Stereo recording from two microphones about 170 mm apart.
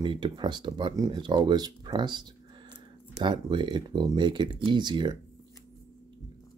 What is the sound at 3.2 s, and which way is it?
Speech, 30° right (ahead or behind).